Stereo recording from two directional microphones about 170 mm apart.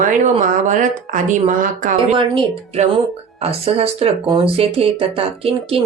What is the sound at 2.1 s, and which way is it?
Speech, 30° right (ahead or behind).